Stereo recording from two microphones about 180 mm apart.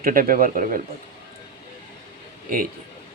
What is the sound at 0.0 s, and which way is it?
Speech, 50° right (ahead or behind).